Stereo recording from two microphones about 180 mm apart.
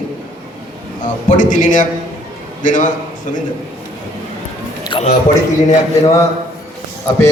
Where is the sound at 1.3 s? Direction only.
45° left (ahead or behind).